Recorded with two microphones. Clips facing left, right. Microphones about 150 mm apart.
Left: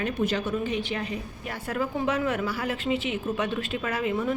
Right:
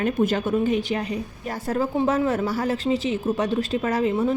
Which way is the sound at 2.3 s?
40° right (ahead or behind).